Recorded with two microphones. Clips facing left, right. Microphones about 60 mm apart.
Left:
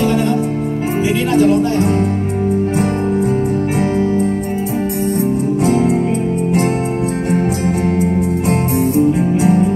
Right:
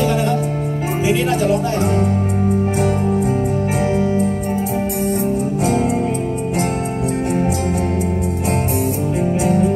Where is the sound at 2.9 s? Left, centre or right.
Left.